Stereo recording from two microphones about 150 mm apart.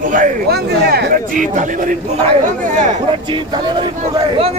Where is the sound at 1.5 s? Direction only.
55° right (ahead or behind).